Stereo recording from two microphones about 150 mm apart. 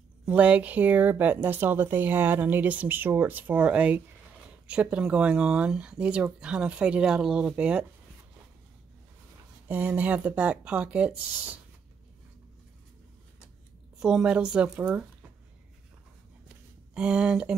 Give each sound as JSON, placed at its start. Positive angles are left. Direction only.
{"t": 0.2, "sound": "a woman's voice", "side_deg": -10}
{"t": 9.7, "sound": "a woman's voice", "side_deg": -10}
{"t": 13.9, "sound": "a woman's voice", "side_deg": -5}
{"t": 16.9, "sound": "a woman's voice", "side_deg": -5}